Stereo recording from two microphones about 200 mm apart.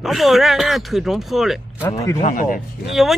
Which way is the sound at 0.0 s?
Centre (ahead or behind).